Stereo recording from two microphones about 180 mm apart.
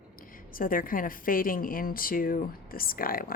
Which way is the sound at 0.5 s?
50° left (ahead or behind).